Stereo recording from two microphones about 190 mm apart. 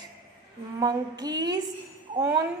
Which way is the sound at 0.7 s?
20° right (ahead or behind).